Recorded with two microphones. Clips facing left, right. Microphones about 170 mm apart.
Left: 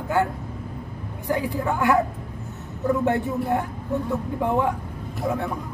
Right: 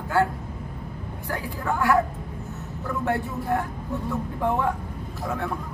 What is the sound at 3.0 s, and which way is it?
Speech, 20° left (ahead or behind).